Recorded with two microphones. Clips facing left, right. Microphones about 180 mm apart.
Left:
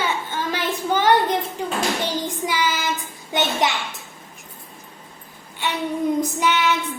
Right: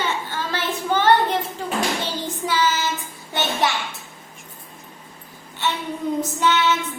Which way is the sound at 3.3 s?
20° left (ahead or behind).